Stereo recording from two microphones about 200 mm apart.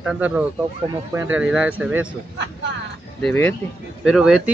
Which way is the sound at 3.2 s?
10° left (ahead or behind).